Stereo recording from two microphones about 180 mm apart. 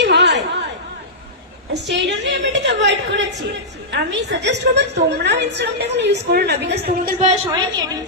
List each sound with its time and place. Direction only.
0.0 s a sound: 75° right (ahead or behind)
1.7 s a woman's voice: 70° right (ahead or behind)
7.2 s a woman's voice: 40° right (ahead or behind)